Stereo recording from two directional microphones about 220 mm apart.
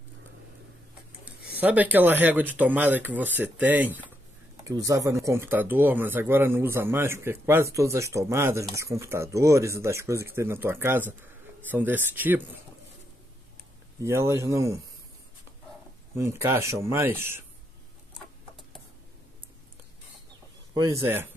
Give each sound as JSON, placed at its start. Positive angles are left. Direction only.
{"t": 1.2, "sound": "speech", "side_deg": -5}
{"t": 14.0, "sound": "speech", "side_deg": -10}
{"t": 16.2, "sound": "speech", "side_deg": -10}
{"t": 20.7, "sound": "speech", "side_deg": -15}